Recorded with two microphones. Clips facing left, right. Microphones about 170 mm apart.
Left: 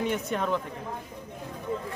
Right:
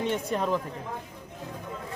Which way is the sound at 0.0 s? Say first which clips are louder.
Even; 30° right (ahead or behind).